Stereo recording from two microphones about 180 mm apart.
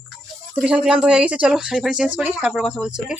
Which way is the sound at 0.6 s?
5° right (ahead or behind).